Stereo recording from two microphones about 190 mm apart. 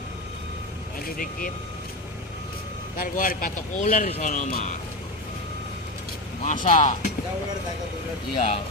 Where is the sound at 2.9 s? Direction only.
45° left (ahead or behind).